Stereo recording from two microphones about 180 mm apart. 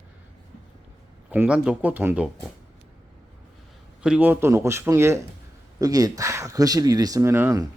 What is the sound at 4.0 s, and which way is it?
Speech, 10° right (ahead or behind).